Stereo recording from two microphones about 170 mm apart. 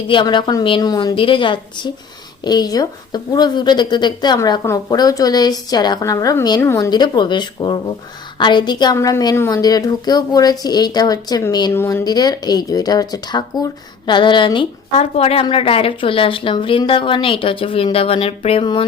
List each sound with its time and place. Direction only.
0.1 s a woman's voice: 30° left (ahead or behind)